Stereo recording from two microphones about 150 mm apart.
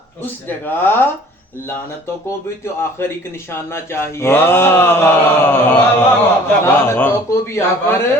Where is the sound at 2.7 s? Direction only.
15° left (ahead or behind).